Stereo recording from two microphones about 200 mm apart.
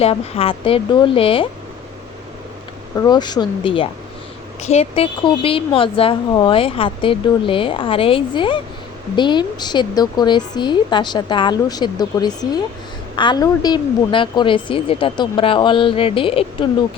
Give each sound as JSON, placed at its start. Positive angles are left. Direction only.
{"t": 0.0, "sound": "a woman's voice", "side_deg": 30}
{"t": 2.9, "sound": "a woman's voice", "side_deg": 20}